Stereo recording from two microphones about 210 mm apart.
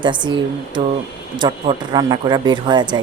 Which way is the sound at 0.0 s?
20° right (ahead or behind).